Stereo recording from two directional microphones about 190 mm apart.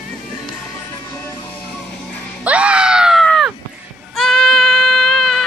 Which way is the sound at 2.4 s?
5° right (ahead or behind).